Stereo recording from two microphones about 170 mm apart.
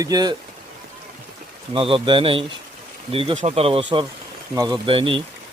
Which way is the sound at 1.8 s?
30° right (ahead or behind).